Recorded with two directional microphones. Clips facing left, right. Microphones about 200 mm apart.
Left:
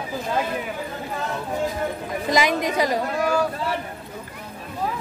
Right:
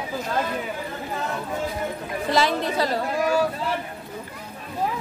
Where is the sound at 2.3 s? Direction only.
15° left (ahead or behind).